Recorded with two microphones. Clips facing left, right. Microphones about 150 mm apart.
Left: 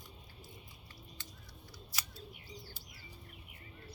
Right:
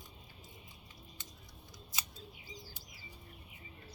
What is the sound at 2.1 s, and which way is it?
Scissors, 90° right.